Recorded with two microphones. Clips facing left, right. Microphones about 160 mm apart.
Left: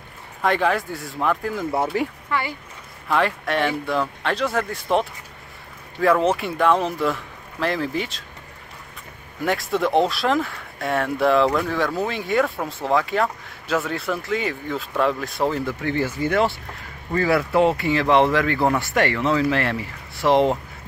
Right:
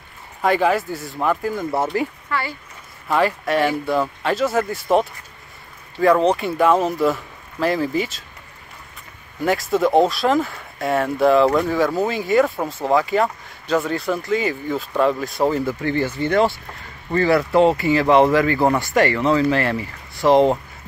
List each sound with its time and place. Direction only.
0.4 s speech: 5° right (ahead or behind)
2.2 s speech: 15° left (ahead or behind)
3.1 s speech: 5° right (ahead or behind)
9.4 s speech: centre (ahead or behind)